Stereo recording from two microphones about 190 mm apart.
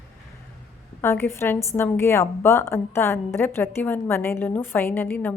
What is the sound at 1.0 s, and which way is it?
A woman's voice, 10° left (ahead or behind).